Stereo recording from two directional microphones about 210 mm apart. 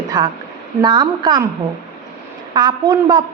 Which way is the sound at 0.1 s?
20° right (ahead or behind).